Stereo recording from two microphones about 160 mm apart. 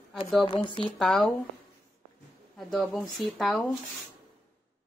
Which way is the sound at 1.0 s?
Centre (ahead or behind).